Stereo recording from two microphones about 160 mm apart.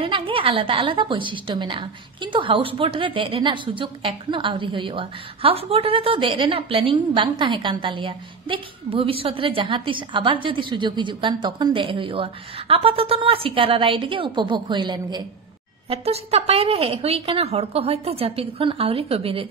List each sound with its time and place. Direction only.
0.0 s a woman's voice: 35° right (ahead or behind)
15.9 s a woman's voice: 40° right (ahead or behind)